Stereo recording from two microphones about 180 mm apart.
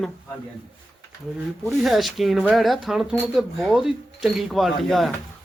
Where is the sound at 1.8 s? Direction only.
Centre (ahead or behind).